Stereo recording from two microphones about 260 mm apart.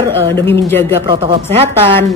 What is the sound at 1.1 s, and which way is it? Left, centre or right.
Speech, centre.